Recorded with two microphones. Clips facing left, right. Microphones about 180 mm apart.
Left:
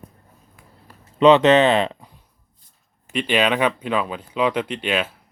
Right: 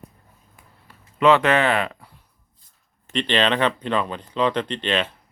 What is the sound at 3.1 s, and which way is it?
Speech, 10° left (ahead or behind).